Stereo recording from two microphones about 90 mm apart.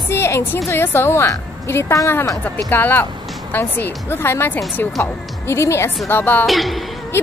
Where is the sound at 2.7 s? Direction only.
20° left (ahead or behind).